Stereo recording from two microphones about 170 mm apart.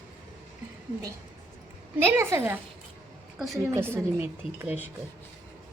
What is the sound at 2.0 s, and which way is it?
Speech, 15° right (ahead or behind).